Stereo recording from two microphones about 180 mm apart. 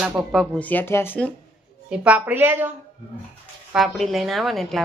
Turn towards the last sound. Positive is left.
turn(degrees=0)  # may be behind; listen again after turning